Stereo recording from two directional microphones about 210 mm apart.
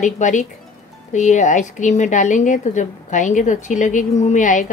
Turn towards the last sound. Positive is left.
turn(degrees=35)  # may be behind; listen again after turning